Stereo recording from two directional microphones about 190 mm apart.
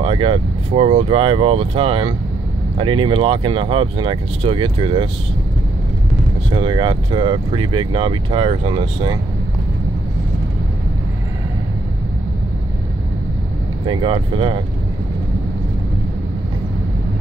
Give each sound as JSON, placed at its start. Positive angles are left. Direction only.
{"t": 0.0, "sound": "speech", "side_deg": -30}
{"t": 6.5, "sound": "speech", "side_deg": -25}
{"t": 13.8, "sound": "speech", "side_deg": -25}